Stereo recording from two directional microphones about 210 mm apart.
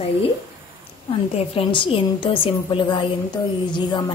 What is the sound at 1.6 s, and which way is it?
A woman's voice, 25° left (ahead or behind).